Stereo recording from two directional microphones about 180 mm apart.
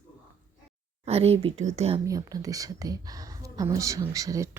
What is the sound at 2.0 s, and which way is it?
A woman's voice, 20° right (ahead or behind).